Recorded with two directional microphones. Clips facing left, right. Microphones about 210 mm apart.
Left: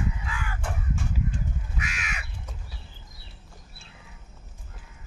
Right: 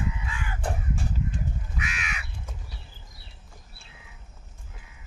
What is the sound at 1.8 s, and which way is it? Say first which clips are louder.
Crow: right 1 dB; 40° left (ahead or behind).